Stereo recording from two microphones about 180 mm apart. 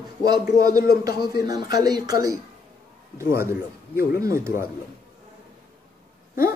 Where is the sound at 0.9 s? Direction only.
55° left (ahead or behind).